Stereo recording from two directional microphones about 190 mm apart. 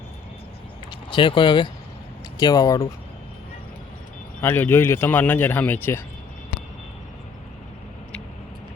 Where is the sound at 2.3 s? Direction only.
20° left (ahead or behind).